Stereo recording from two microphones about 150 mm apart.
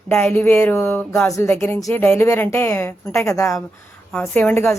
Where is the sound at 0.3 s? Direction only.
15° left (ahead or behind).